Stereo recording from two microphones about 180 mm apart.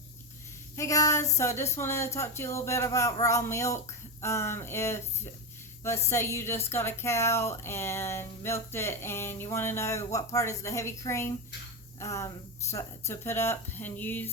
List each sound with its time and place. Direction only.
0.8 s speech: 15° left (ahead or behind)